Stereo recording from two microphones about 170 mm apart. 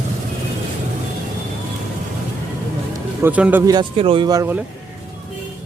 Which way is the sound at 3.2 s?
10° right (ahead or behind).